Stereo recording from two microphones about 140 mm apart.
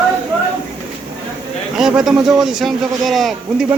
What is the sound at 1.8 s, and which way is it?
A man's voice, 5° right (ahead or behind).